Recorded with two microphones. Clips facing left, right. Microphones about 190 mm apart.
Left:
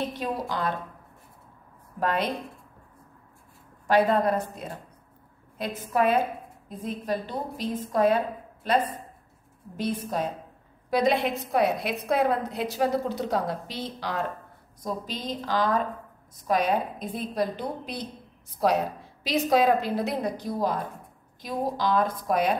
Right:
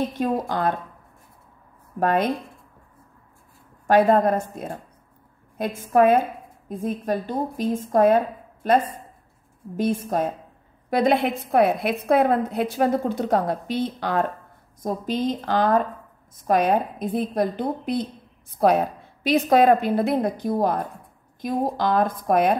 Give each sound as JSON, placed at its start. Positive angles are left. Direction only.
{"t": 0.1, "sound": "a woman's voice", "side_deg": -50}
{"t": 2.0, "sound": "a woman's voice", "side_deg": -50}
{"t": 3.8, "sound": "a woman's voice", "side_deg": -50}
{"t": 5.8, "sound": "a woman's voice", "side_deg": -50}